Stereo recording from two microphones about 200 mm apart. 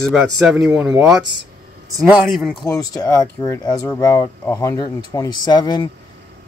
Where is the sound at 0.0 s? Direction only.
Centre (ahead or behind).